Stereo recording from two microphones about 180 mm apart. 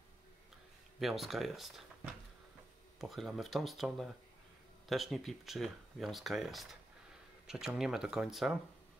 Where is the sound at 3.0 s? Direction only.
Centre (ahead or behind).